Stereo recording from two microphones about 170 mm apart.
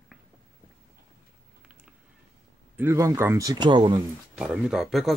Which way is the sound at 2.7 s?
15° right (ahead or behind).